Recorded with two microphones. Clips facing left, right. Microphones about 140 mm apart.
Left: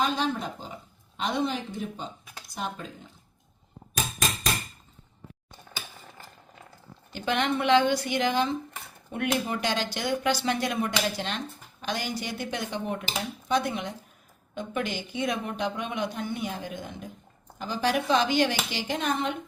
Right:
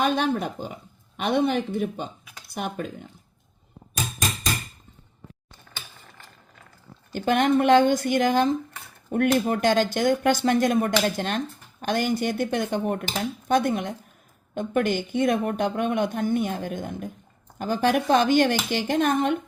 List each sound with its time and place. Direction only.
0.0 s speech: 60° right (ahead or behind)
7.1 s speech: 45° right (ahead or behind)